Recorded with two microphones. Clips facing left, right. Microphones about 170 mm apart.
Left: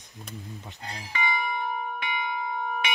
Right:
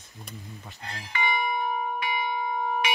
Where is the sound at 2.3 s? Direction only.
25° right (ahead or behind).